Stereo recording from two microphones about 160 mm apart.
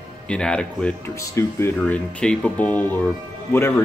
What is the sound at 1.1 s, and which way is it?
Speech, 20° left (ahead or behind).